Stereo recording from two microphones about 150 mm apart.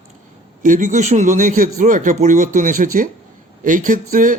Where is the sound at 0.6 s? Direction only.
60° right (ahead or behind).